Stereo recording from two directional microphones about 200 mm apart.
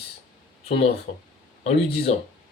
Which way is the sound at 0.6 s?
30° left (ahead or behind).